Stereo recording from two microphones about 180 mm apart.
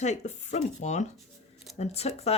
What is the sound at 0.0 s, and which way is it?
Speech, 40° left (ahead or behind).